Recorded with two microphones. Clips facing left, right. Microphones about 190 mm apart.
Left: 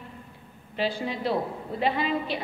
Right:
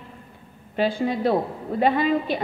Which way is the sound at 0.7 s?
50° right (ahead or behind).